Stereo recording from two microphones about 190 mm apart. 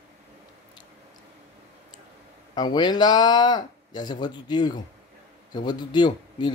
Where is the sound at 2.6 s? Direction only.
20° left (ahead or behind).